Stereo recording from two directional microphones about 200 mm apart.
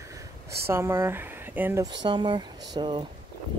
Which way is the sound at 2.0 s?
25° right (ahead or behind).